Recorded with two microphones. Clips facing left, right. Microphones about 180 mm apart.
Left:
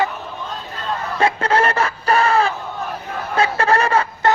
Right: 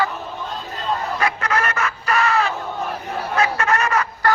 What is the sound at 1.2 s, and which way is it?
Chicken, 30° left (ahead or behind).